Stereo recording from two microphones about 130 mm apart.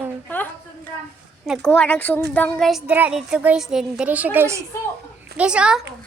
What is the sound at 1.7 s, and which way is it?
Speech, 10° left (ahead or behind).